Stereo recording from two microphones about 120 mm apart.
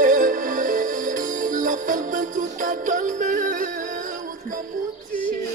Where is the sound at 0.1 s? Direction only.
90° right.